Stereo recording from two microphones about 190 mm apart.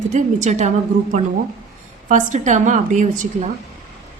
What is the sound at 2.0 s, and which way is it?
A woman's voice, 40° right (ahead or behind).